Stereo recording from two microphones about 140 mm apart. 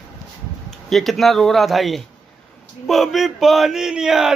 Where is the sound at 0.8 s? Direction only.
Centre (ahead or behind).